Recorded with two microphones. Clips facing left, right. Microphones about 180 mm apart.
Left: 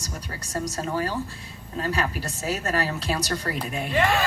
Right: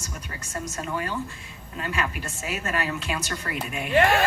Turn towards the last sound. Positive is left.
turn(degrees=35)  # may be behind; listen again after turning